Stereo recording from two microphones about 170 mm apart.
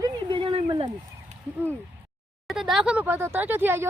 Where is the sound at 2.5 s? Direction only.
Centre (ahead or behind).